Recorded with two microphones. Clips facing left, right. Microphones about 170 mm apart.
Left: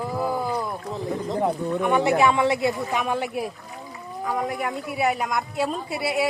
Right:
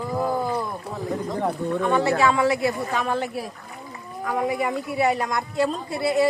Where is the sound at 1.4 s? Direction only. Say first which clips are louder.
Left 1 dB; 15° left (ahead or behind).